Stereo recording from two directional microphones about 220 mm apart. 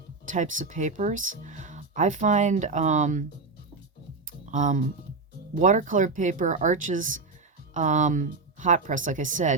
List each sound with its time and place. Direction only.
0.3 s speech: 35° right (ahead or behind)
4.3 s music: 35° right (ahead or behind)
5.5 s speech: 35° right (ahead or behind)